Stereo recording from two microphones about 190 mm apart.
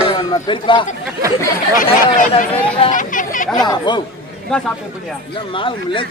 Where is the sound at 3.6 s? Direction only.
20° left (ahead or behind).